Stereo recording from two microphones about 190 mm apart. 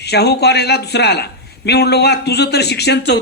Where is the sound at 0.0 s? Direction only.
60° left (ahead or behind).